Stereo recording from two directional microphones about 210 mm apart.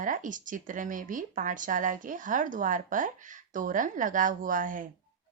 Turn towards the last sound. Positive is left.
turn(degrees=-40)  # may be behind; listen again after turning